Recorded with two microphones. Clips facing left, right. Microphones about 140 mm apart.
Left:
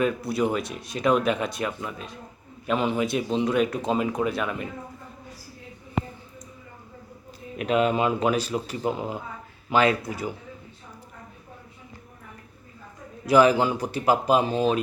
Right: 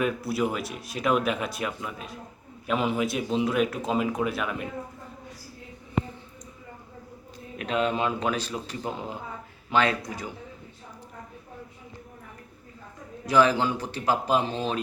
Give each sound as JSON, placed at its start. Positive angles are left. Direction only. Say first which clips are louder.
{"t": 0.0, "sound": "speech", "louder": "left 2 dB", "side_deg": -5}
{"t": 7.6, "sound": "speech", "louder": "left 4 dB", "side_deg": 5}
{"t": 13.2, "sound": "speech", "louder": "left 3 dB", "side_deg": 10}